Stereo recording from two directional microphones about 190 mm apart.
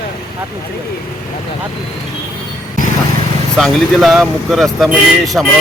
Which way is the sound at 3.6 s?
Centre (ahead or behind).